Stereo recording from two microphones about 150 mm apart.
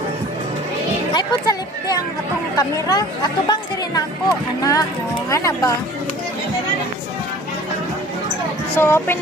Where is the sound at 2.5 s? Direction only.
25° left (ahead or behind).